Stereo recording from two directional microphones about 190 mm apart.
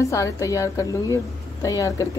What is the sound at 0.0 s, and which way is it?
A woman's voice, 15° left (ahead or behind).